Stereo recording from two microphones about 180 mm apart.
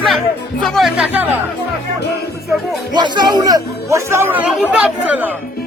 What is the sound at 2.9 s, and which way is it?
Speech, 25° right (ahead or behind).